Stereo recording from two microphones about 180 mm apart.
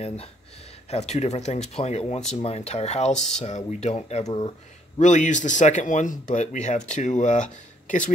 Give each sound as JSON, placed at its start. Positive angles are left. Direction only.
{"t": 0.0, "sound": "speech", "side_deg": 35}
{"t": 3.1, "sound": "speech", "side_deg": 5}
{"t": 3.4, "sound": "speech", "side_deg": 40}